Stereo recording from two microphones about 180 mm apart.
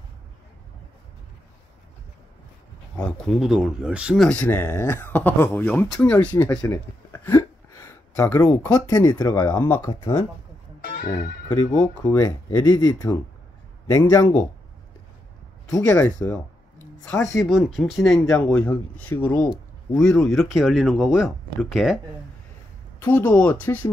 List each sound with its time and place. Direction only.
3.0 s speech: 5° left (ahead or behind)
4.3 s speech: 10° left (ahead or behind)
10.8 s music: 55° left (ahead or behind)
11.4 s speech: 15° left (ahead or behind)
15.8 s speech: 10° left (ahead or behind)
16.3 s a sound: 10° left (ahead or behind)
17.7 s speech: centre (ahead or behind)
22.9 s speech: 10° left (ahead or behind)